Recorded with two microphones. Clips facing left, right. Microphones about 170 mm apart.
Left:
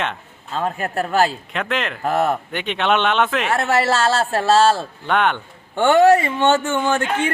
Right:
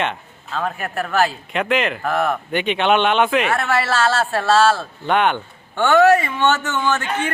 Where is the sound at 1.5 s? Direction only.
5° right (ahead or behind).